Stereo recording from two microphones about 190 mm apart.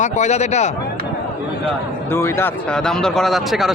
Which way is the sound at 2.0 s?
15° left (ahead or behind).